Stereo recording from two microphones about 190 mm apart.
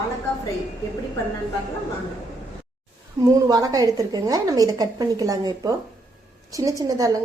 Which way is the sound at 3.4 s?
20° right (ahead or behind).